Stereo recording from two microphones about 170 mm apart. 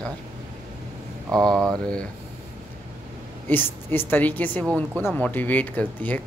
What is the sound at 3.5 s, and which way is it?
Speech, 10° left (ahead or behind).